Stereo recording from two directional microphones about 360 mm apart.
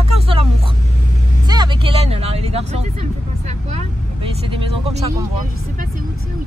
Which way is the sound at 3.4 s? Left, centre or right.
Centre.